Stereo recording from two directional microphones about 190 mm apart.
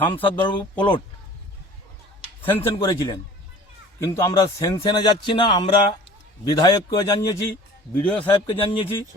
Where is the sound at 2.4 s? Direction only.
10° left (ahead or behind).